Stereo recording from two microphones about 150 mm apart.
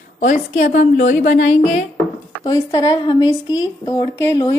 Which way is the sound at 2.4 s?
25° left (ahead or behind).